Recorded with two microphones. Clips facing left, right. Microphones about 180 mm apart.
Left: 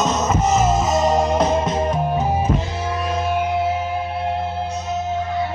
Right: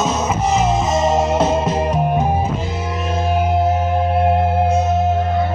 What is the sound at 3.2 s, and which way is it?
Music, 45° right (ahead or behind).